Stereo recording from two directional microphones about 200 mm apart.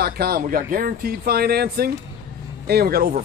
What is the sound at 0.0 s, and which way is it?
Speech, 50° right (ahead or behind).